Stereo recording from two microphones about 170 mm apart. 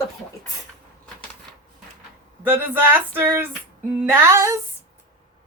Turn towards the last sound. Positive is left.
turn(degrees=-15)  # may be behind; listen again after turning